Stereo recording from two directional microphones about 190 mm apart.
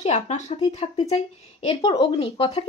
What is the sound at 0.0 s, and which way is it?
Speech, 35° left (ahead or behind).